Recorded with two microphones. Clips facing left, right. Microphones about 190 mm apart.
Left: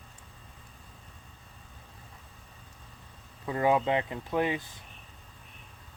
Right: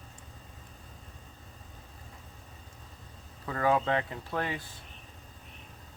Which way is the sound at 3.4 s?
20° left (ahead or behind).